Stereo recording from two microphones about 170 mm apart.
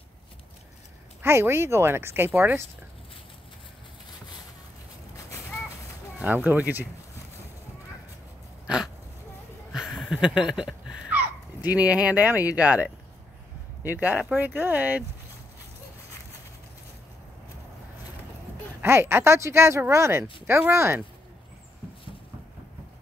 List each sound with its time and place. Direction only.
1.2 s speech: 15° right (ahead or behind)
5.1 s a sound: 20° left (ahead or behind)
6.1 s speech: 10° right (ahead or behind)
8.6 s a sound: 5° right (ahead or behind)
12.5 s speech: 10° right (ahead or behind)
18.8 s speech: 15° right (ahead or behind)